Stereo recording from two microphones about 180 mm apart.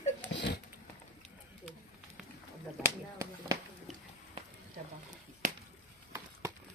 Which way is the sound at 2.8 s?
15° right (ahead or behind).